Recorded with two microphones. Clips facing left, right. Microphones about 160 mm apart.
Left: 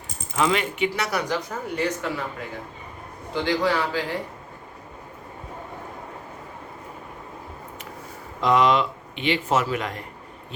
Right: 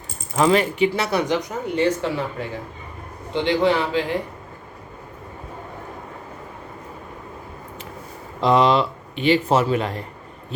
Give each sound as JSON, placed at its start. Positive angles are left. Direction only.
{"t": 0.3, "sound": "speech", "side_deg": -35}
{"t": 3.3, "sound": "speech", "side_deg": -25}
{"t": 8.4, "sound": "speech", "side_deg": -30}